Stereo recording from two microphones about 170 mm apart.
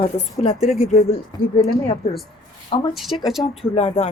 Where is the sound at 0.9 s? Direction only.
45° left (ahead or behind).